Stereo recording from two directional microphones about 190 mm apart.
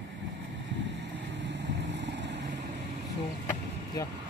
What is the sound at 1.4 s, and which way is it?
Vehicle, 70° right (ahead or behind).